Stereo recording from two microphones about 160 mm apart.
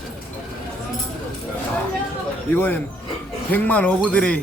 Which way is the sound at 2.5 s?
10° left (ahead or behind).